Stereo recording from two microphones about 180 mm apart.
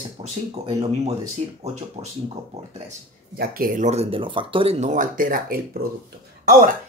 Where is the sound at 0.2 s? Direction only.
35° right (ahead or behind).